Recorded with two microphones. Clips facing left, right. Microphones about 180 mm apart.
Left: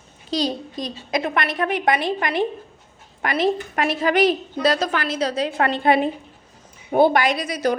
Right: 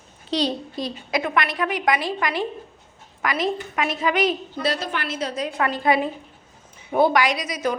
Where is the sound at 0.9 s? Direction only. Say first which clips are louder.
Left 1 dB; 30° left (ahead or behind).